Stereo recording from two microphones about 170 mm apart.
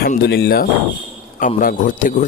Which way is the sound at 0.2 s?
70° left (ahead or behind).